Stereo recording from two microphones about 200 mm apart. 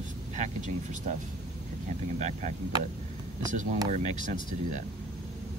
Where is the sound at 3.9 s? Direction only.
40° right (ahead or behind).